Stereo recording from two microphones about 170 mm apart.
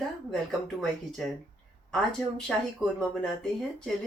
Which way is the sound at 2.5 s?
5° left (ahead or behind).